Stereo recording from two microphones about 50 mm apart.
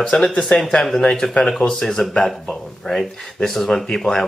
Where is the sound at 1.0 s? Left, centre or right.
Centre.